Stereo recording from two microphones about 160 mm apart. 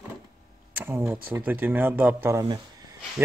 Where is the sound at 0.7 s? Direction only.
15° right (ahead or behind).